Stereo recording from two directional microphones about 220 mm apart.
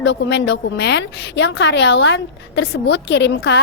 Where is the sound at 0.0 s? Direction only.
55° left (ahead or behind).